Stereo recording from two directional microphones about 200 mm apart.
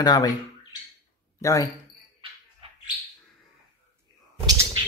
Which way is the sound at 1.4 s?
15° left (ahead or behind).